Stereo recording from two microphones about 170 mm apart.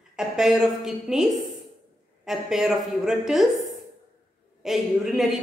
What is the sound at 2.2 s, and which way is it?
A woman's voice, 5° right (ahead or behind).